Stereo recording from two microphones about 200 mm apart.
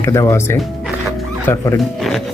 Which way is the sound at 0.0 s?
15° left (ahead or behind).